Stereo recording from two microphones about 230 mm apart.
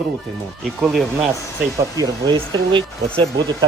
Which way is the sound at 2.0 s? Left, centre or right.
Centre.